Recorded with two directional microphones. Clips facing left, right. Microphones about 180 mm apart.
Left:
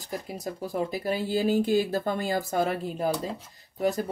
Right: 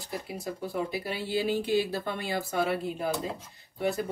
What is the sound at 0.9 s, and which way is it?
A man's voice, 45° left (ahead or behind).